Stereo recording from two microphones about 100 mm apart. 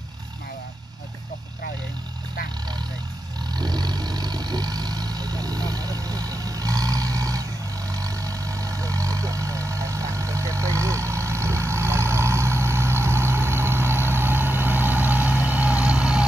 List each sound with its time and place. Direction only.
3.5 s vehicle: 45° right (ahead or behind); by 16.3 s 10° right (ahead or behind)